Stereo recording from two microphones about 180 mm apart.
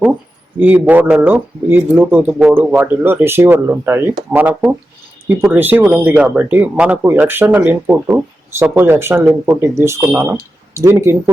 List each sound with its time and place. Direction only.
0.6 s speech: 10° right (ahead or behind)